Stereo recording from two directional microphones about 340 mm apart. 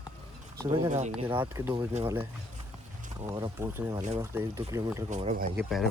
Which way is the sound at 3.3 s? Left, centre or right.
Centre.